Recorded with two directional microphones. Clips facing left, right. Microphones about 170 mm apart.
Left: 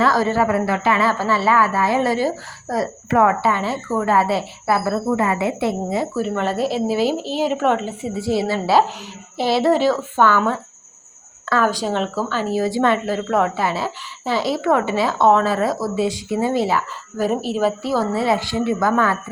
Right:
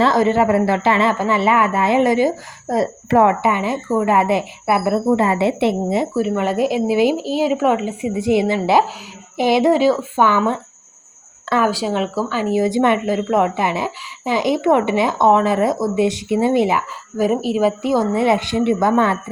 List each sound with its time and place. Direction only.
0.0 s a woman's voice: 20° right (ahead or behind)
6.1 s speech: 10° right (ahead or behind)
11.6 s a woman's voice: 10° right (ahead or behind); by 19.1 s 25° right (ahead or behind)